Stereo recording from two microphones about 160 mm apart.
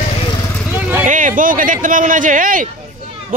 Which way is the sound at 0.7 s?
10° right (ahead or behind).